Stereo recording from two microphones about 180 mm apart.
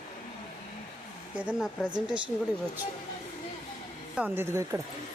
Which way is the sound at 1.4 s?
5° right (ahead or behind).